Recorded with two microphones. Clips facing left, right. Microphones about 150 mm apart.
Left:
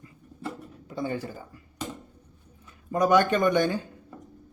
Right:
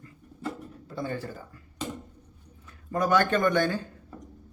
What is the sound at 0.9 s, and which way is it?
Speech, 15° left (ahead or behind).